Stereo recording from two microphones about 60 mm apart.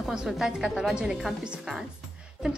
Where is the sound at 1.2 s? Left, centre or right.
Centre.